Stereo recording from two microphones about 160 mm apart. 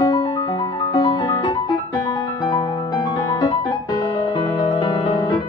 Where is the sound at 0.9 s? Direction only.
30° left (ahead or behind).